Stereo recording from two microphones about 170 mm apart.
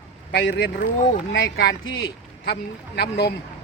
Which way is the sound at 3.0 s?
70° left (ahead or behind).